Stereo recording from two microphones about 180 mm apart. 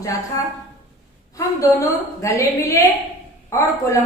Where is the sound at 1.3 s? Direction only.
15° left (ahead or behind).